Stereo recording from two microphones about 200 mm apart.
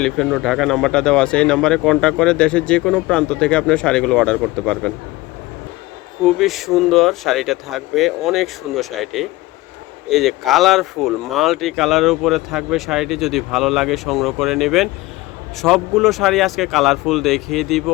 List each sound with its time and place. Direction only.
0.0 s speech: centre (ahead or behind)
6.2 s speech: centre (ahead or behind)